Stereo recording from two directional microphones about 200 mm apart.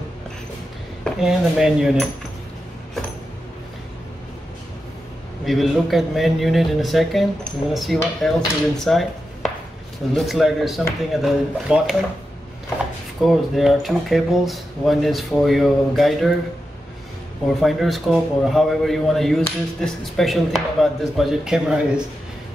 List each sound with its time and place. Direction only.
1.0 s a man's voice: centre (ahead or behind)
5.4 s a man's voice: centre (ahead or behind)
13.2 s a man's voice: centre (ahead or behind)
17.6 s a man's voice: centre (ahead or behind)